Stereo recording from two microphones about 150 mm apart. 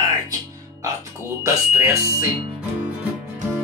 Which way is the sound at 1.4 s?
20° right (ahead or behind).